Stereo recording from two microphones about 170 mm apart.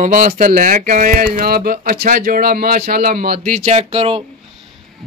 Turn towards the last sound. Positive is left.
turn(degrees=-35)  # may be behind; listen again after turning